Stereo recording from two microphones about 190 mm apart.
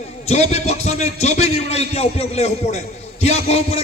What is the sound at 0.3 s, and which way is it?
A man's voice, 35° left (ahead or behind).